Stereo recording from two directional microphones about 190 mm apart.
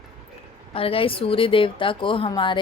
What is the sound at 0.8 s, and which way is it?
A woman's voice, 30° left (ahead or behind).